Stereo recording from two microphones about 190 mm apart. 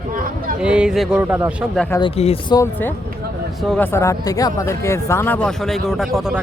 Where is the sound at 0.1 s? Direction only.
45° right (ahead or behind).